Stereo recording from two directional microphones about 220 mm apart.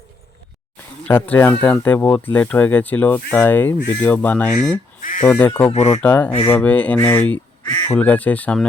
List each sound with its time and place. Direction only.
1.0 s speech: 10° left (ahead or behind)
4.9 s goose: 35° left (ahead or behind)
5.2 s speech: 5° left (ahead or behind)
5.7 s speech: 30° left (ahead or behind)
6.0 s speech: 5° left (ahead or behind)
7.6 s duck: 20° left (ahead or behind)
7.9 s speech: 5° left (ahead or behind)